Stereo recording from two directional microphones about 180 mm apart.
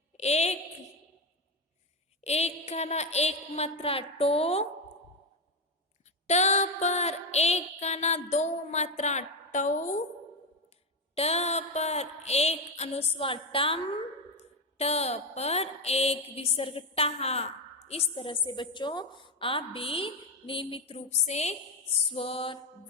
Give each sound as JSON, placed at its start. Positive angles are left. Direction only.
{"t": 0.2, "sound": "a woman's voice", "side_deg": 35}
{"t": 2.2, "sound": "a woman's voice", "side_deg": 35}
{"t": 6.2, "sound": "music", "side_deg": 40}
{"t": 11.1, "sound": "a woman's voice", "side_deg": 35}